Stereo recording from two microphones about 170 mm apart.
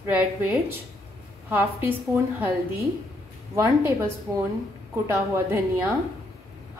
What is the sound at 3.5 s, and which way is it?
Speech, 20° right (ahead or behind).